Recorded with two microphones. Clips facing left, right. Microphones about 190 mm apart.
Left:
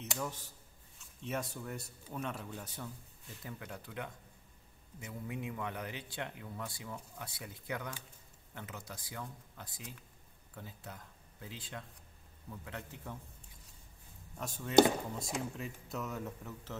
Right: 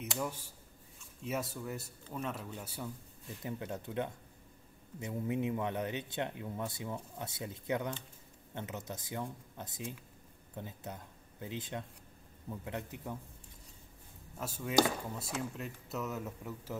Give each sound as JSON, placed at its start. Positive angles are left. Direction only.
{"t": 0.1, "sound": "a man's voice", "side_deg": -10}
{"t": 3.4, "sound": "speech", "side_deg": -25}
{"t": 14.4, "sound": "a man's voice", "side_deg": -5}